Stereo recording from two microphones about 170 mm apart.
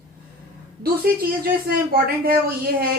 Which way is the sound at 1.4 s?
60° right (ahead or behind).